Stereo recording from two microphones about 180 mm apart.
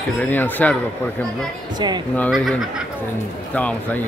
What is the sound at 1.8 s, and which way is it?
Speech, 25° right (ahead or behind).